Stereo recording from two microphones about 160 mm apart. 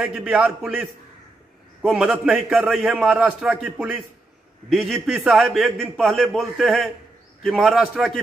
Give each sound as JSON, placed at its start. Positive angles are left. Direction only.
{"t": 0.0, "sound": "a man's voice", "side_deg": -5}